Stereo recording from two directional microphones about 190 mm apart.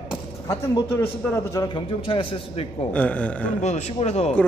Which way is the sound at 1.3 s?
20° left (ahead or behind).